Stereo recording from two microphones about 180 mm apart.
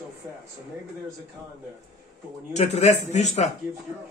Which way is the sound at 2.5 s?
40° left (ahead or behind).